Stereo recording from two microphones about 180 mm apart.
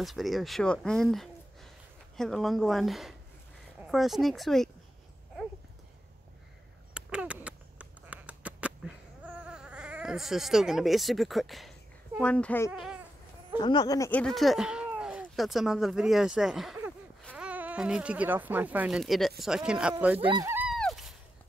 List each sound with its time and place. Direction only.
0.0 s speech: centre (ahead or behind)
6.9 s duck: 5° right (ahead or behind)
12.2 s speech: 5° left (ahead or behind)
12.7 s goat: centre (ahead or behind)
13.6 s speech: 25° left (ahead or behind)
14.1 s speech: centre (ahead or behind)
20.2 s speech: 30° right (ahead or behind)
20.4 s a sound: 10° right (ahead or behind)
20.7 s a sound: centre (ahead or behind)